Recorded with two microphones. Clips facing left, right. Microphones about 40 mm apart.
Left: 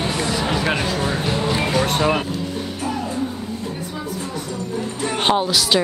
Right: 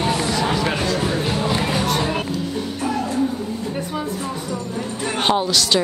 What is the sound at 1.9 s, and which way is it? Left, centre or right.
Vehicle, left.